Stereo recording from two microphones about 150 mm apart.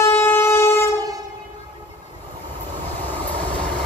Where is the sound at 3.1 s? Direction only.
10° left (ahead or behind).